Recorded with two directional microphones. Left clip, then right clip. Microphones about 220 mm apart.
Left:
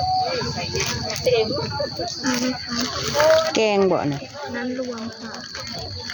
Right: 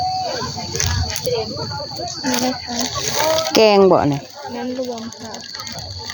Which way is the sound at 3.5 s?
25° right (ahead or behind).